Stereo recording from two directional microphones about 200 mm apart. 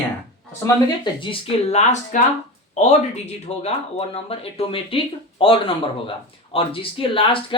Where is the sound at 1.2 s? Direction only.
25° left (ahead or behind).